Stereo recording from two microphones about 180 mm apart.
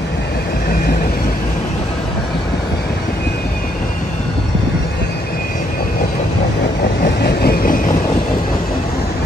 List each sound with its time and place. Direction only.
7.2 s train: 60° left (ahead or behind)